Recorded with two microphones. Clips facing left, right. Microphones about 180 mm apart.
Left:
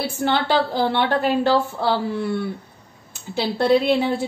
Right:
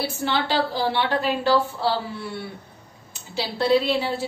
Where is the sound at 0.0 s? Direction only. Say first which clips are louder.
Left 3 dB; 50° left (ahead or behind).